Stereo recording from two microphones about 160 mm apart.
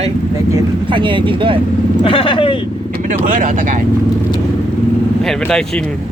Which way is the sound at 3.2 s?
55° right (ahead or behind).